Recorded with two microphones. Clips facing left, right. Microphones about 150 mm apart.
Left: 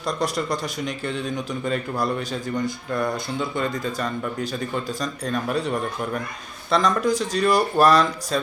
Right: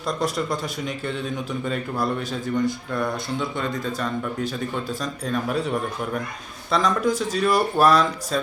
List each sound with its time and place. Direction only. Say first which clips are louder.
0.0 s speech: even; 5° right (ahead or behind)